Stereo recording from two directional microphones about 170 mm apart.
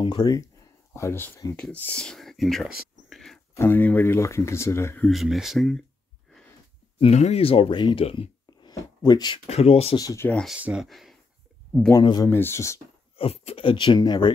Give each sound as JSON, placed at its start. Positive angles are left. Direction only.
{"t": 0.0, "sound": "speech", "side_deg": 25}
{"t": 0.9, "sound": "speech", "side_deg": 15}
{"t": 3.1, "sound": "music", "side_deg": 0}
{"t": 3.5, "sound": "speech", "side_deg": 15}
{"t": 5.1, "sound": "speech", "side_deg": 0}
{"t": 7.0, "sound": "speech", "side_deg": 40}
{"t": 8.5, "sound": "a sound", "side_deg": 25}
{"t": 9.5, "sound": "speech", "side_deg": 35}
{"t": 9.9, "sound": "speech", "side_deg": 15}
{"t": 10.4, "sound": "speech", "side_deg": -5}
{"t": 11.9, "sound": "speech", "side_deg": 25}
{"t": 13.2, "sound": "speech", "side_deg": 35}